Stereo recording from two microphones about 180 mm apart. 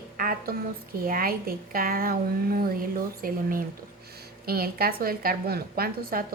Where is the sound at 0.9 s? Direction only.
55° right (ahead or behind).